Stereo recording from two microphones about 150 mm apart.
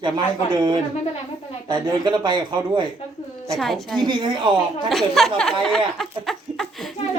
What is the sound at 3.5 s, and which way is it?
Speech, centre (ahead or behind).